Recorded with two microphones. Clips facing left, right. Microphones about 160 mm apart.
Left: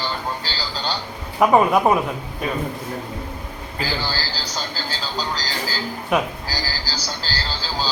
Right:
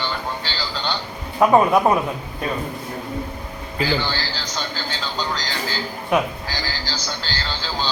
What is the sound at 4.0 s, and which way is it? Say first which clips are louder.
Speech: right 1 dB; 35° left (ahead or behind).